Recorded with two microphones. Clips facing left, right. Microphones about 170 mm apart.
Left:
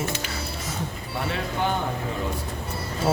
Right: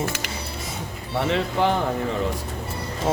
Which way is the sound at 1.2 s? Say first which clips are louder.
Right 5 dB; 90° right.